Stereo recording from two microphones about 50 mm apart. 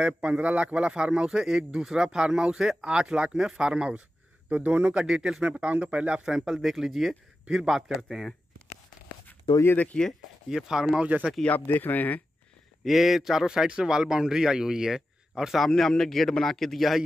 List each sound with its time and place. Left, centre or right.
0.0 s speech: right
4.5 s speech: right
5.0 s speech: centre
6.2 s speech: centre
7.9 s speech: centre
9.9 s speech: centre
10.5 s speech: centre
11.7 s speech: left
12.8 s speech: centre